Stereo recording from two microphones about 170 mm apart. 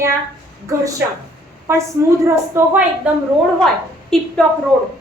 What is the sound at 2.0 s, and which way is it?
Speech, 15° right (ahead or behind).